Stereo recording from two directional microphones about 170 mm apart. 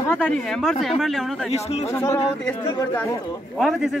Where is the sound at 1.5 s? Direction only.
35° left (ahead or behind).